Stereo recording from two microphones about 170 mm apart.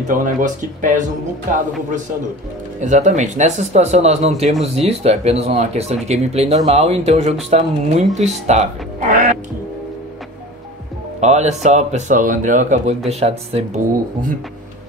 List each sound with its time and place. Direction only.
0.1 s speech: 50° right (ahead or behind)
2.8 s speech: 45° right (ahead or behind)
11.1 s speech: 40° right (ahead or behind)